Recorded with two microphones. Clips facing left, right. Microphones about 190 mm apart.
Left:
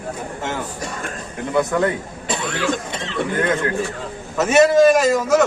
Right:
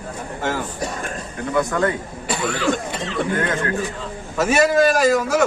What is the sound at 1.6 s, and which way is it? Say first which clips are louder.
Speech: left 2 dB; 20° left (ahead or behind).